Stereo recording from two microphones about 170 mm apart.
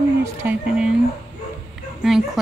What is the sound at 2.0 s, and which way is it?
Speech, centre (ahead or behind).